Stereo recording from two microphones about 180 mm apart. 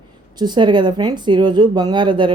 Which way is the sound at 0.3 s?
25° right (ahead or behind).